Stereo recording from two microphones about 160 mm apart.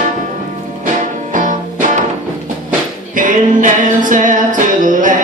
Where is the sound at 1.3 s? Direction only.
55° right (ahead or behind).